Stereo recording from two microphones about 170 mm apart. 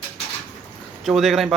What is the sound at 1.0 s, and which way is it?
Speech, centre (ahead or behind).